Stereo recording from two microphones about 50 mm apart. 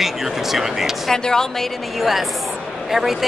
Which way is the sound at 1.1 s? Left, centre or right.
Centre.